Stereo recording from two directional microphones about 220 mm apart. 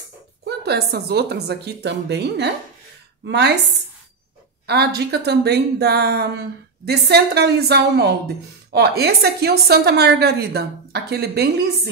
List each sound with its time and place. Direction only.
0.5 s speech: 50° right (ahead or behind)
4.6 s speech: 45° right (ahead or behind)